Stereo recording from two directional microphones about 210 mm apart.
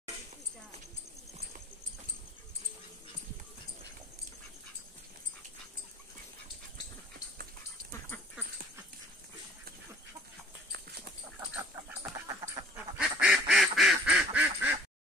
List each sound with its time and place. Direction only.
11.3 s duck: 10° right (ahead or behind)
13.2 s quack: 5° right (ahead or behind)